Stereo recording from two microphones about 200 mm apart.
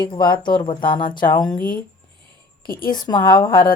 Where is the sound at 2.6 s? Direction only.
45° left (ahead or behind).